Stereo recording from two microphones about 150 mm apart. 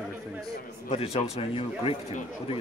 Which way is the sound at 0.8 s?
45° left (ahead or behind).